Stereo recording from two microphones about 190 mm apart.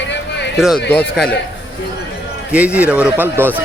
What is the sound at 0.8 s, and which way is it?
Speech, 60° left (ahead or behind).